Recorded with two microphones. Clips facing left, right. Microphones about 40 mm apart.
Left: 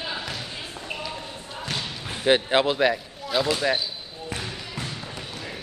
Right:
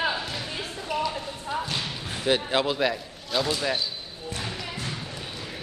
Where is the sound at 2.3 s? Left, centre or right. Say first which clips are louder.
Left 4 dB; left.